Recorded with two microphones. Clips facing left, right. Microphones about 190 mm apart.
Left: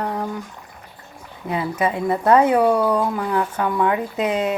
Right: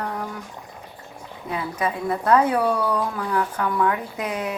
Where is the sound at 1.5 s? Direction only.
25° left (ahead or behind).